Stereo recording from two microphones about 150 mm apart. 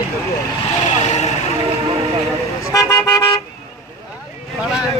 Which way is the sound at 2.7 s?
25° left (ahead or behind).